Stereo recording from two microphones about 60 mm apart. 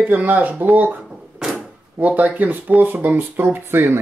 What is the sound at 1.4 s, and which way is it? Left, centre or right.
Drawer open or close, centre.